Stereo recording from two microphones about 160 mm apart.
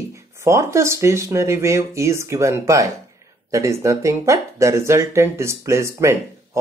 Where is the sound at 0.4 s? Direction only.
15° right (ahead or behind).